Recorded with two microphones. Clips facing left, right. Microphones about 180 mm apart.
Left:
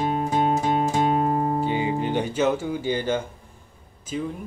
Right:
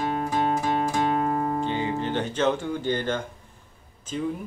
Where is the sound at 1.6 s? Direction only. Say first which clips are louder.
Left 3 dB; 10° left (ahead or behind).